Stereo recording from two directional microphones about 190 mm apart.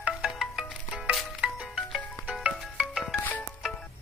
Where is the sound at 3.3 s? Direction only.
10° left (ahead or behind).